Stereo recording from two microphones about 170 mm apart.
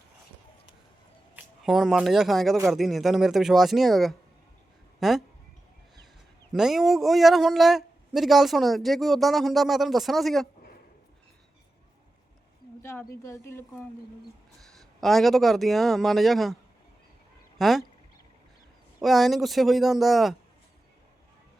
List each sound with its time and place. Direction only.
1.4 s speech: centre (ahead or behind)
6.5 s speech: centre (ahead or behind)
12.8 s speech: 15° left (ahead or behind)
14.8 s speech: centre (ahead or behind)
17.6 s speech: centre (ahead or behind)
19.0 s speech: centre (ahead or behind)